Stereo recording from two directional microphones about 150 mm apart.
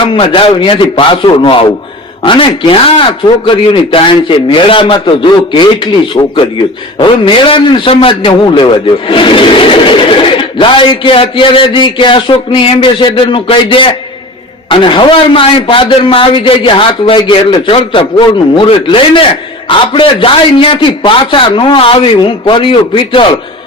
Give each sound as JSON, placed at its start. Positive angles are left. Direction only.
{"t": 0.0, "sound": "speech", "side_deg": 35}